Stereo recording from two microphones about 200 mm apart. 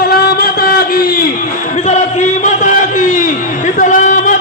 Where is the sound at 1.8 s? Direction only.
35° left (ahead or behind).